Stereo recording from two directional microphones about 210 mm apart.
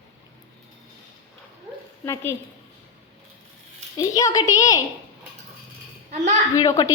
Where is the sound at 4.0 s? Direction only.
15° left (ahead or behind).